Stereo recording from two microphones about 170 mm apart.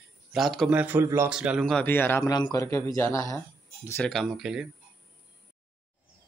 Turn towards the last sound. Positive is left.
turn(degrees=-5)  # may be behind; listen again after turning